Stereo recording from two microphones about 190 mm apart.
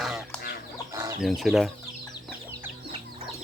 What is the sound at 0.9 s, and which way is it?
Chicken, 15° right (ahead or behind).